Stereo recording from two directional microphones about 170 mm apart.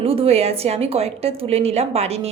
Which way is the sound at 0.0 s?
35° right (ahead or behind).